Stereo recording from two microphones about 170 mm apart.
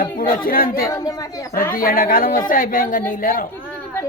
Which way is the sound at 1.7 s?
55° left (ahead or behind).